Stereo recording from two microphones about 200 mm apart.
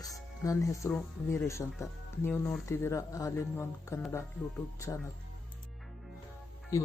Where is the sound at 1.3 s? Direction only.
15° left (ahead or behind).